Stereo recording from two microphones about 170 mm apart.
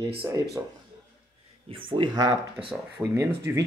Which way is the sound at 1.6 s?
30° right (ahead or behind).